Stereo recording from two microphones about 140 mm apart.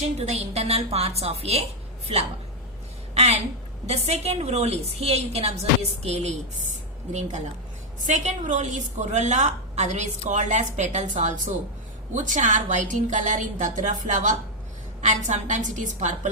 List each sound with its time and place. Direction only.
0.0 s a woman's voice: 50° right (ahead or behind)
3.2 s a sound: 50° right (ahead or behind)
3.8 s a woman's voice: 50° right (ahead or behind)